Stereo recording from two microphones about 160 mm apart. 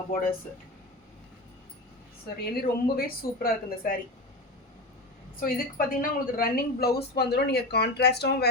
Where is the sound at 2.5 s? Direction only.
65° left (ahead or behind).